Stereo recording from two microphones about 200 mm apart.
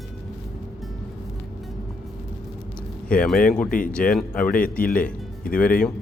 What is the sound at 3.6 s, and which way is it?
Speech, 45° left (ahead or behind).